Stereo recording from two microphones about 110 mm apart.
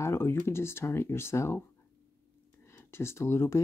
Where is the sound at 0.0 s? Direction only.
20° left (ahead or behind).